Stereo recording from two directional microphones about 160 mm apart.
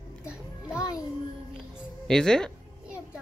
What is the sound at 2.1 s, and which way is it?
Speech, 5° left (ahead or behind).